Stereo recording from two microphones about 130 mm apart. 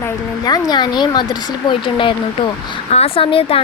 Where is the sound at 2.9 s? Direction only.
50° left (ahead or behind).